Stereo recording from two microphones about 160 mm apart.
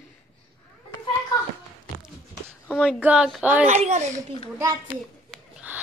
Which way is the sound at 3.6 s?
45° right (ahead or behind).